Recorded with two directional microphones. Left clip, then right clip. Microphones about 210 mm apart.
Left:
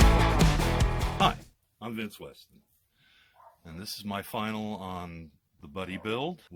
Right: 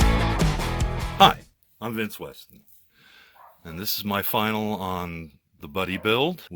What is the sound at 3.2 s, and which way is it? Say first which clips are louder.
Speech: right 7 dB; 35° right (ahead or behind).